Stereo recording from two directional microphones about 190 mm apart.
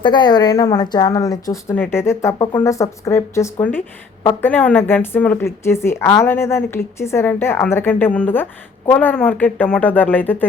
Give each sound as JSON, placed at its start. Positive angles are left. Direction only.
{"t": 0.0, "sound": "a woman's voice", "side_deg": 25}